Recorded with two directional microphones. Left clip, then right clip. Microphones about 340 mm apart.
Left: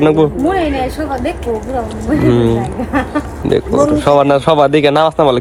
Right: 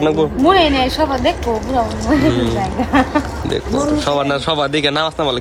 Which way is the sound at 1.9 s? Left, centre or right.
Centre.